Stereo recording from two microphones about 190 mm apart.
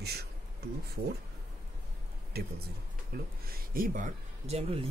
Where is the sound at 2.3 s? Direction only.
55° right (ahead or behind).